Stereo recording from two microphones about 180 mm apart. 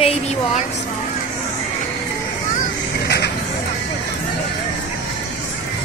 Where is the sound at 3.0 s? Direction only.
65° left (ahead or behind).